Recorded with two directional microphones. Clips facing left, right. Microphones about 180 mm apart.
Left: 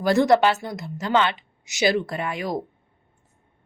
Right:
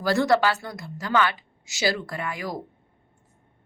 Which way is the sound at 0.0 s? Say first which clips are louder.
Left 3 dB; 20° left (ahead or behind).